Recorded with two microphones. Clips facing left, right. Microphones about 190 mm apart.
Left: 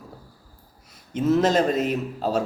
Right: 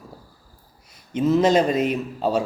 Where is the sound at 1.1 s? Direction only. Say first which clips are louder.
Right 2 dB; 5° left (ahead or behind).